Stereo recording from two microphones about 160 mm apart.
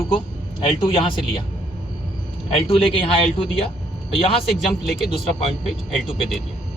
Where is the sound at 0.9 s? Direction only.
35° left (ahead or behind).